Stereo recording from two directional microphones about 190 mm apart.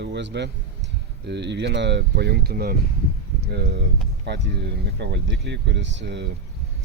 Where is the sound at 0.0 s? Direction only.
65° right (ahead or behind).